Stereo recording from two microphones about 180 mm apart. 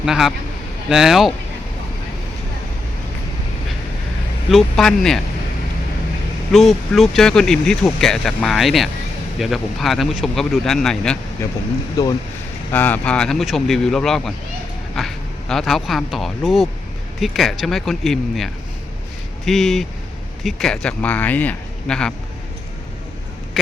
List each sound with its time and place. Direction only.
0.0 s speech: centre (ahead or behind)
4.5 s speech: centre (ahead or behind)
6.5 s speech: centre (ahead or behind)
12.0 s speech: 20° left (ahead or behind)